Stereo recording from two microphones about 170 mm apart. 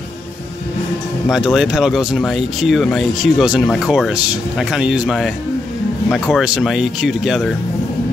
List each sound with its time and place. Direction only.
1.3 s speech: centre (ahead or behind)